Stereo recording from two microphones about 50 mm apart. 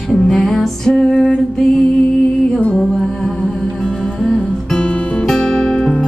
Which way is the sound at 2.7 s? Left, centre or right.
Centre.